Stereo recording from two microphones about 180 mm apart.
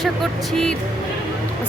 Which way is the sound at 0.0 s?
Centre (ahead or behind).